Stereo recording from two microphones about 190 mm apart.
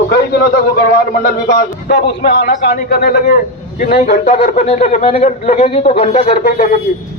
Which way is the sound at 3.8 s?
40° left (ahead or behind).